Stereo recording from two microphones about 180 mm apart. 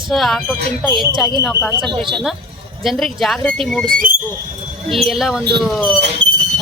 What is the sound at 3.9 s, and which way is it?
Speech, 50° right (ahead or behind).